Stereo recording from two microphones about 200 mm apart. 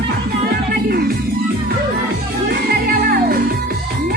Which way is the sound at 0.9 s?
50° right (ahead or behind).